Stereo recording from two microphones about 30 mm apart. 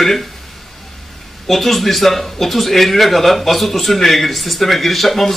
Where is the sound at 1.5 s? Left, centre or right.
Centre.